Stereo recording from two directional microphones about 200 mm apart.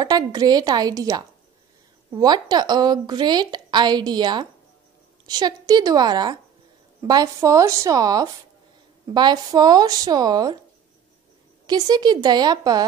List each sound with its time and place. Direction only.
0.0 s a woman's voice: 20° right (ahead or behind)
11.6 s a woman's voice: 20° right (ahead or behind)